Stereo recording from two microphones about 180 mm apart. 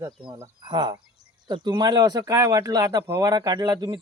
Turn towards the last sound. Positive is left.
turn(degrees=-20)  # may be behind; listen again after turning